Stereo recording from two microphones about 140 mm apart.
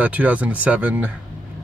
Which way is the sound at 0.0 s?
10° right (ahead or behind).